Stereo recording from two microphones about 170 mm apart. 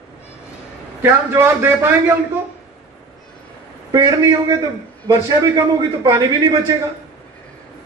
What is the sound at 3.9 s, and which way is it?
Speech, 20° right (ahead or behind).